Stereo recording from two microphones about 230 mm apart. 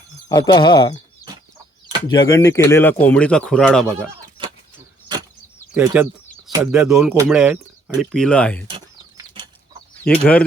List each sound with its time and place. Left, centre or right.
0.3 s speech: centre
2.0 s speech: centre
5.7 s speech: centre
9.1 s bird flight: right
10.0 s speech: centre